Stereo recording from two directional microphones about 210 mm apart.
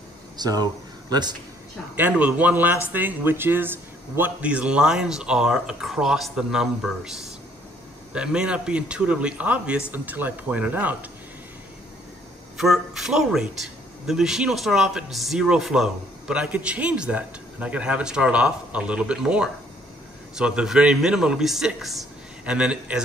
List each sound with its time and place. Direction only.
0.4 s speech: 20° right (ahead or behind)
2.0 s a man's voice: 5° right (ahead or behind)
8.1 s a man's voice: 5° right (ahead or behind)
12.5 s a man's voice: centre (ahead or behind)